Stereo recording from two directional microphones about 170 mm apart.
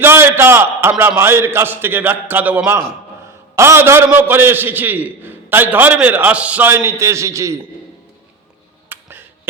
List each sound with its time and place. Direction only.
0.0 s a man's voice: 15° right (ahead or behind)
8.9 s finger snapping: 10° right (ahead or behind)